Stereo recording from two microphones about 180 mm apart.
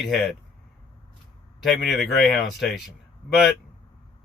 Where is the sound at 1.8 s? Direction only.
Centre (ahead or behind).